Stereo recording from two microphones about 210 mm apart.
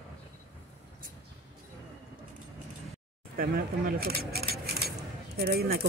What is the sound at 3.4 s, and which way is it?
Speech, 45° right (ahead or behind).